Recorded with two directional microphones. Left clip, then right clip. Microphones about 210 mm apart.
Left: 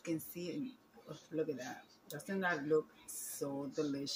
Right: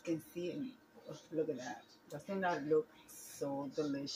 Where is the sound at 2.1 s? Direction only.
25° left (ahead or behind).